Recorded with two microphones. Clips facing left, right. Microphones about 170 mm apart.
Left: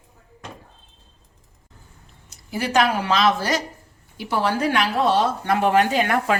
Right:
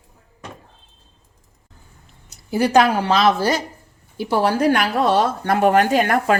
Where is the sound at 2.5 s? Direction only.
35° right (ahead or behind).